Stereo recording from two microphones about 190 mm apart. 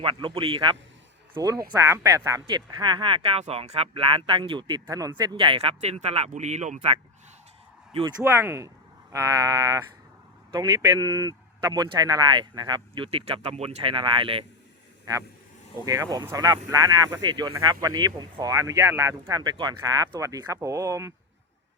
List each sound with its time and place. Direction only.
0.0 s speech: 25° right (ahead or behind)
8.2 s speech: 15° right (ahead or behind)
15.8 s speech: 20° right (ahead or behind)